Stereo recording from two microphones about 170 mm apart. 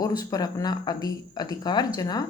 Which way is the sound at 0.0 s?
20° left (ahead or behind).